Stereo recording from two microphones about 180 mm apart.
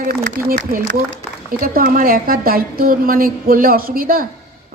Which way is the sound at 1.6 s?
55° right (ahead or behind).